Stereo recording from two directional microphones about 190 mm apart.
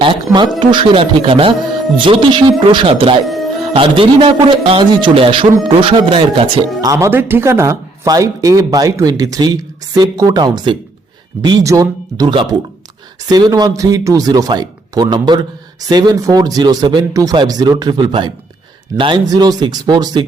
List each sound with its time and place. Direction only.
0.0 s speech: 25° right (ahead or behind)
3.2 s music: centre (ahead or behind)
3.7 s speech: 30° right (ahead or behind)
6.9 s speech: 10° right (ahead or behind)